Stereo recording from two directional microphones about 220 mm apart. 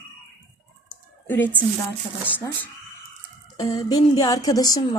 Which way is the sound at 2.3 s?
10° left (ahead or behind).